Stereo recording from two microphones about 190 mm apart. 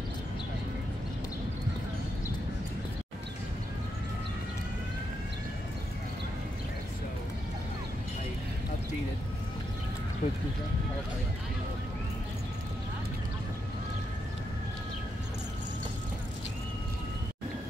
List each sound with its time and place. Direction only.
10.2 s speech: 30° left (ahead or behind)